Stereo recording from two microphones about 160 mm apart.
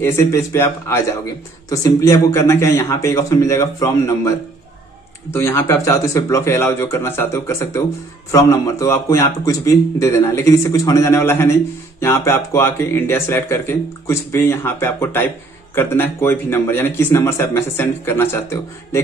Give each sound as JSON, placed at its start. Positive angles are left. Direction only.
{"t": 0.0, "sound": "a man's voice", "side_deg": 20}
{"t": 5.3, "sound": "a man's voice", "side_deg": 15}